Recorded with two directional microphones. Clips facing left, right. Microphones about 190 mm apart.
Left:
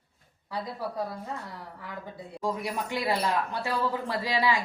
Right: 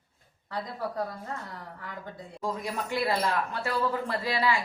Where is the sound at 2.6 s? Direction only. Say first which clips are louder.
Right 3 dB; 15° left (ahead or behind).